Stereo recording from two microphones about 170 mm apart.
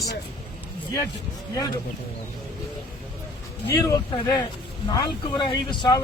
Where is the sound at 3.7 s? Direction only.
20° left (ahead or behind).